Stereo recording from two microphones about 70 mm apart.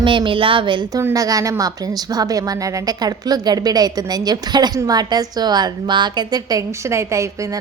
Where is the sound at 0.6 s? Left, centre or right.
Right.